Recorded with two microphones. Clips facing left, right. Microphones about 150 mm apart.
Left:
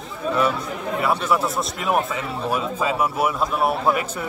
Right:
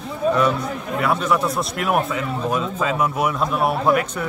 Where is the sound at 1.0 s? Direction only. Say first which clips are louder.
Right 1 dB; centre (ahead or behind).